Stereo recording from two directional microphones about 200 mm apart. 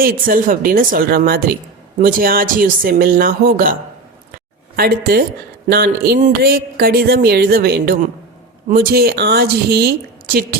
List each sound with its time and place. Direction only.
0.0 s speech: 45° right (ahead or behind)
4.8 s speech: 50° right (ahead or behind)